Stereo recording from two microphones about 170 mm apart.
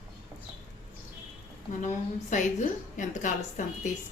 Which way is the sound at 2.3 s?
45° left (ahead or behind).